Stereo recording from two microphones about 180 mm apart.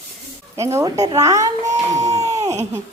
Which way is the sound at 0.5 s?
15° right (ahead or behind).